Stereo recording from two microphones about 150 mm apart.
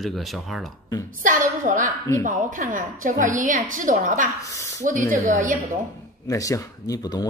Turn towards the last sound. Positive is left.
turn(degrees=25)  # may be behind; listen again after turning